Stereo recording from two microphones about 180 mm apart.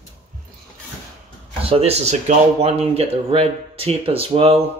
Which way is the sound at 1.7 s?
35° right (ahead or behind).